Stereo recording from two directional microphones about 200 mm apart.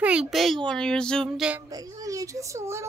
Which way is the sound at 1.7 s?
20° right (ahead or behind).